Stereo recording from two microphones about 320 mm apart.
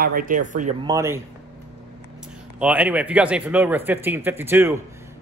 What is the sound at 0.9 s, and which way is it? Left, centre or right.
Speech, centre.